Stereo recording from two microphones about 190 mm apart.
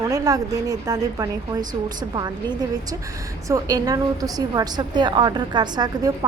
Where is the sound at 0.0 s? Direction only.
20° right (ahead or behind).